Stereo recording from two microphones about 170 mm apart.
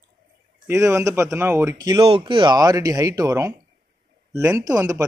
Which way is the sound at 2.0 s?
30° right (ahead or behind).